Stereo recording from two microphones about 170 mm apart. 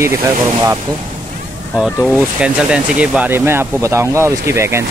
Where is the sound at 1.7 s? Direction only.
Centre (ahead or behind).